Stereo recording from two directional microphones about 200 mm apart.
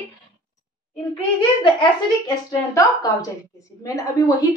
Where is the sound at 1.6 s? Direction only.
20° left (ahead or behind).